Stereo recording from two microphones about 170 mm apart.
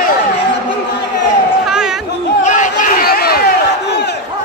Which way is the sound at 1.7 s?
5° right (ahead or behind).